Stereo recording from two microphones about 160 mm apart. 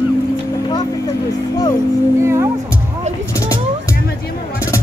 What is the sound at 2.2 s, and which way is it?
Speech, 15° right (ahead or behind).